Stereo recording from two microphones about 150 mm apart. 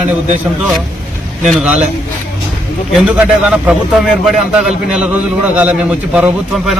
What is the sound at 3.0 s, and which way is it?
A man's voice, 5° right (ahead or behind).